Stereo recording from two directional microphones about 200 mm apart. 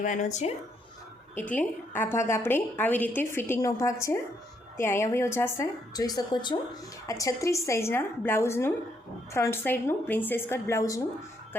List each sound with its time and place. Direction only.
0.0 s speech: 40° left (ahead or behind)
1.4 s a woman's voice: 10° left (ahead or behind)